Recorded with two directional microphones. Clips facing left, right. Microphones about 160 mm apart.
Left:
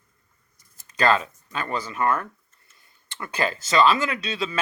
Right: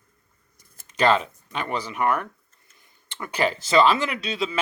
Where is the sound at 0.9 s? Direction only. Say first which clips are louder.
Right 1 dB; 20° right (ahead or behind).